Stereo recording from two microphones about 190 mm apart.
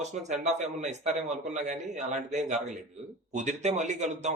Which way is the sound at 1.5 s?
40° right (ahead or behind).